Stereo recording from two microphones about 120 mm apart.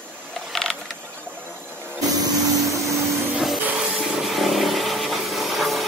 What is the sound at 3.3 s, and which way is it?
Music, centre (ahead or behind).